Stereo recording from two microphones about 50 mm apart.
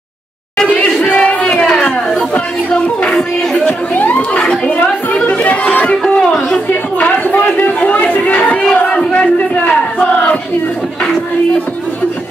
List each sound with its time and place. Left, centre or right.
0.9 s a sound: left
2.7 s speech: centre
3.9 s speech: left
5.3 s chatter: left
6.7 s chatter: left
8.7 s battle cry: left